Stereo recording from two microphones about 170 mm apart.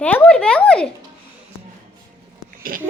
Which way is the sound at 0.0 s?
10° left (ahead or behind).